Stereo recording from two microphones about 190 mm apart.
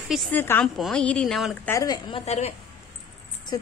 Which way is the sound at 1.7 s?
20° left (ahead or behind).